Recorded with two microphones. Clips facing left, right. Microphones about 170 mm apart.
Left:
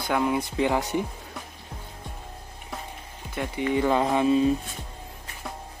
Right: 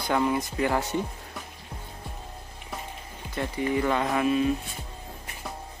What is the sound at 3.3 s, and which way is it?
Music, 20° left (ahead or behind).